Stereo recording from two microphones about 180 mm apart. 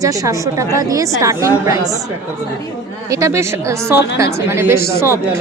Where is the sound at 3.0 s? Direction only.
15° right (ahead or behind).